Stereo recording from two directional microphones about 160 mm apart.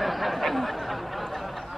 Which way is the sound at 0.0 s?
Centre (ahead or behind).